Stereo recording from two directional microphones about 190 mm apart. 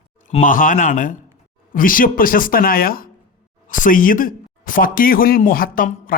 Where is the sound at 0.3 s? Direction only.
40° left (ahead or behind).